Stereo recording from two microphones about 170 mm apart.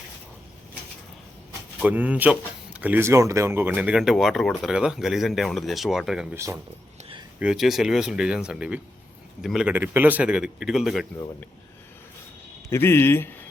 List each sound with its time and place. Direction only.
1.8 s speech: 10° right (ahead or behind)
6.3 s speech: 15° right (ahead or behind)
7.3 s speech: 5° right (ahead or behind)
12.7 s speech: 15° left (ahead or behind)